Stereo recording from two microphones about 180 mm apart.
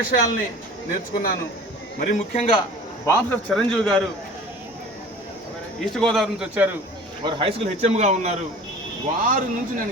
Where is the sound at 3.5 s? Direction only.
5° left (ahead or behind).